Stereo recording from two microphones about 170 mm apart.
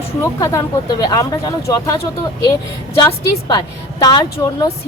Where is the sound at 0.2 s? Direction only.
20° left (ahead or behind).